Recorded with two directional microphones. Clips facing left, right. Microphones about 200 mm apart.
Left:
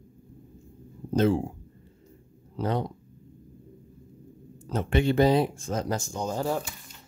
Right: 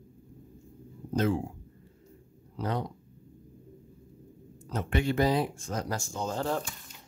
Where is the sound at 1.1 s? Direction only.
30° left (ahead or behind).